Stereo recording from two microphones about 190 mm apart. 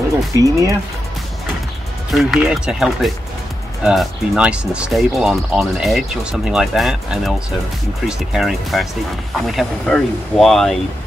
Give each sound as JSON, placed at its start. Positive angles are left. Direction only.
{"t": 0.4, "sound": "speech", "side_deg": -15}
{"t": 2.0, "sound": "speech", "side_deg": 0}